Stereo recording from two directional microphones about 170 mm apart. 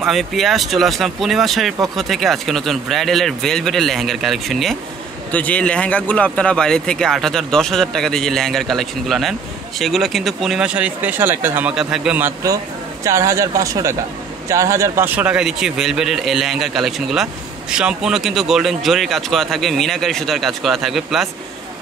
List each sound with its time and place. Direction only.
0.0 s a man's voice: centre (ahead or behind)